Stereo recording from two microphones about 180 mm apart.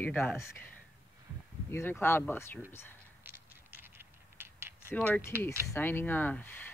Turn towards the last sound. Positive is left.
turn(degrees=10)  # may be behind; listen again after turning